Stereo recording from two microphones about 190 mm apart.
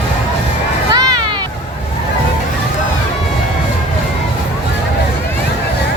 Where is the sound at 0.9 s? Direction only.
20° right (ahead or behind).